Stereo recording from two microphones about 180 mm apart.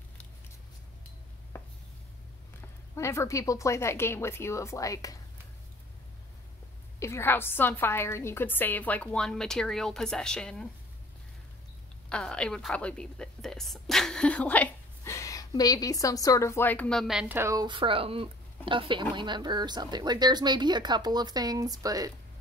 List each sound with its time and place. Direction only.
1.5 s a sound: 10° left (ahead or behind)
3.0 s a woman's voice: 15° left (ahead or behind)
7.0 s a woman's voice: 15° left (ahead or behind)
12.1 s a woman's voice: 5° left (ahead or behind); by 22.1 s 20° right (ahead or behind)